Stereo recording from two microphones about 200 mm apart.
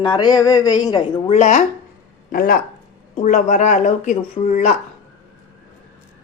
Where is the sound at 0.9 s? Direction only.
30° left (ahead or behind).